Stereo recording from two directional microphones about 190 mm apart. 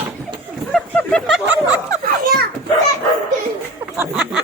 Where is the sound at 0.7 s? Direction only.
Centre (ahead or behind).